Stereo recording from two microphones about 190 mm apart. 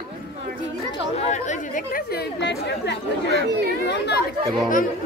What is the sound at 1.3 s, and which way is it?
Chatter, 40° left (ahead or behind).